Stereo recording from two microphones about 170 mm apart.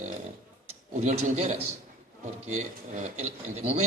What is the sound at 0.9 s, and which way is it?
Speech, 40° right (ahead or behind).